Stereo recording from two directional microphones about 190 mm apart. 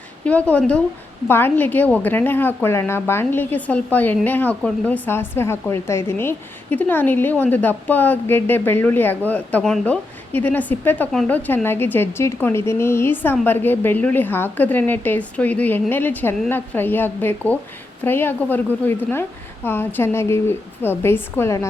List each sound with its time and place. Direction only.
0.3 s a woman's voice: 5° left (ahead or behind)